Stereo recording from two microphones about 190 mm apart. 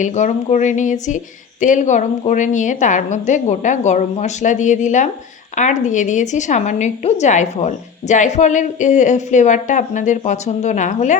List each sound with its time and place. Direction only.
0.0 s a woman's voice: 40° left (ahead or behind)